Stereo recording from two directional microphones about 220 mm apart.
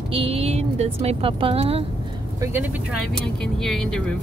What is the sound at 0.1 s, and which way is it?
Speech, 25° right (ahead or behind).